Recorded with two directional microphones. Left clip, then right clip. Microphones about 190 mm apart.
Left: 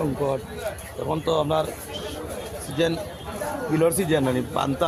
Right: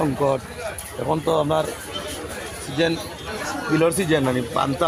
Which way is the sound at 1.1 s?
35° right (ahead or behind).